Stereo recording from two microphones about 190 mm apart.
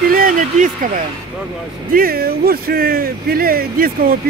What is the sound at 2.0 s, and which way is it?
Speech, 50° right (ahead or behind).